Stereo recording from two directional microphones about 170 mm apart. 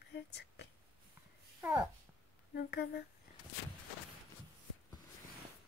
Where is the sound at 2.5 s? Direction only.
70° left (ahead or behind).